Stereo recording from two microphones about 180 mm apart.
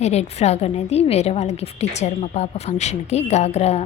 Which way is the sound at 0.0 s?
35° left (ahead or behind).